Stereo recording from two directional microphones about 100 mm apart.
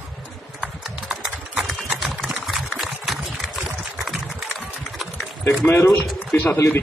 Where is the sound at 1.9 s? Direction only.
Centre (ahead or behind).